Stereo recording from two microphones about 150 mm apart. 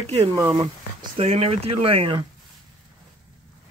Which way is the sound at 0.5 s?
35° right (ahead or behind).